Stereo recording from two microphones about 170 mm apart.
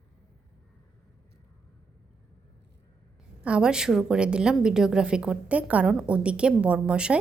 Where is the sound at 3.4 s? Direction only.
5° right (ahead or behind).